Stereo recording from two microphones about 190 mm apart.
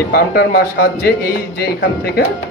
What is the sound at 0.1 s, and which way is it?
A man's voice, 55° left (ahead or behind).